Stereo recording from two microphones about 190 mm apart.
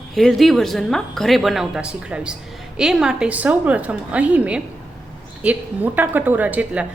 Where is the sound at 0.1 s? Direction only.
Centre (ahead or behind).